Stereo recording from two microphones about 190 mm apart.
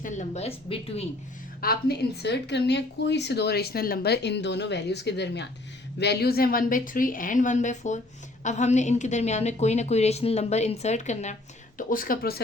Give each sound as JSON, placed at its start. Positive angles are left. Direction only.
{"t": 0.0, "sound": "a woman's voice", "side_deg": 35}
{"t": 1.6, "sound": "a woman's voice", "side_deg": 55}